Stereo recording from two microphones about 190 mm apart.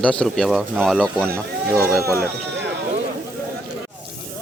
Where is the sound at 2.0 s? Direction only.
15° right (ahead or behind).